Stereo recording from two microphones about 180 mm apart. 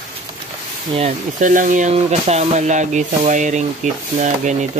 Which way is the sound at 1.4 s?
45° right (ahead or behind).